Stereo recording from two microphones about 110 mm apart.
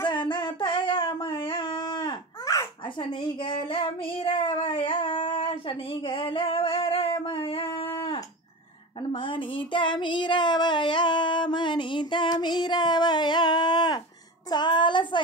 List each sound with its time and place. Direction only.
0.0 s a sound: 45° left (ahead or behind)
2.4 s babbling: 30° left (ahead or behind)
3.0 s child singing: 50° left (ahead or behind)
9.1 s child singing: 50° left (ahead or behind)